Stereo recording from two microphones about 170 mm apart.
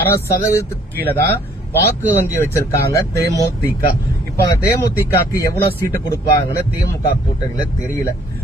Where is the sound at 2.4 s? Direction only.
15° left (ahead or behind).